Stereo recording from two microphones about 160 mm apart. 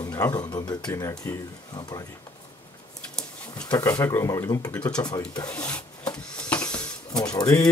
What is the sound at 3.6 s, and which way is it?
Speech, 20° left (ahead or behind).